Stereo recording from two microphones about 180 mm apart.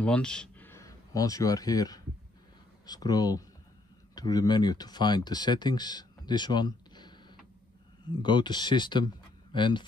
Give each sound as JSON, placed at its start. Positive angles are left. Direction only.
{"t": 0.0, "sound": "speech", "side_deg": 5}